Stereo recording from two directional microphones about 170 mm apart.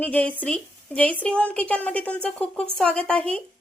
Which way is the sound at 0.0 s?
10° left (ahead or behind).